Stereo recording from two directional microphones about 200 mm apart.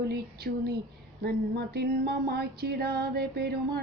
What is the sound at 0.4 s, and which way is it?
Music, 55° right (ahead or behind).